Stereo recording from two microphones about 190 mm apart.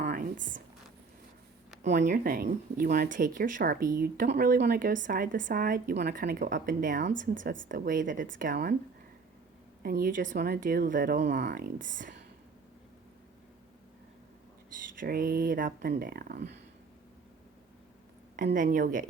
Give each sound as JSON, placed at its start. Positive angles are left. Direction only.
{"t": 0.0, "sound": "a sound", "side_deg": -45}
{"t": 2.1, "sound": "speech", "side_deg": -50}
{"t": 3.1, "sound": "speech", "side_deg": -45}
{"t": 5.9, "sound": "speech", "side_deg": -60}
{"t": 7.0, "sound": "a woman's voice", "side_deg": -80}
{"t": 7.7, "sound": "speech", "side_deg": -45}
{"t": 9.8, "sound": "speech", "side_deg": -50}
{"t": 11.2, "sound": "speech", "side_deg": -65}
{"t": 14.9, "sound": "speech", "side_deg": -50}
{"t": 18.5, "sound": "speech", "side_deg": -45}